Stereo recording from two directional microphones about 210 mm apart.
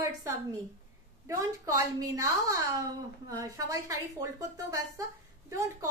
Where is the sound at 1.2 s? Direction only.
15° right (ahead or behind).